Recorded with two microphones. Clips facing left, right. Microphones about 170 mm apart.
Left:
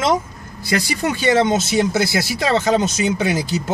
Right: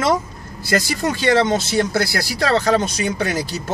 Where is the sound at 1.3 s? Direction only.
20° left (ahead or behind).